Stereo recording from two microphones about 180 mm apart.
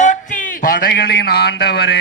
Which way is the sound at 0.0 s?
45° left (ahead or behind).